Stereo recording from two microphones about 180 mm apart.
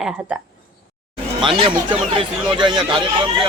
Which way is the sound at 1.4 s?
25° right (ahead or behind).